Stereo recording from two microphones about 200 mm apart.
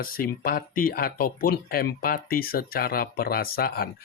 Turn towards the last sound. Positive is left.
turn(degrees=50)  # may be behind; listen again after turning